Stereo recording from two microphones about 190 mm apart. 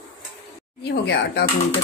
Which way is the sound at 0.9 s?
60° left (ahead or behind).